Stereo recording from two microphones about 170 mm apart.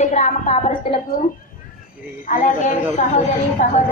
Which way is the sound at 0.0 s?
45° left (ahead or behind).